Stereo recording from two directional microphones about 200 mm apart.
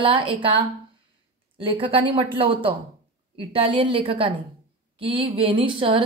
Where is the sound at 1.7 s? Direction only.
25° right (ahead or behind).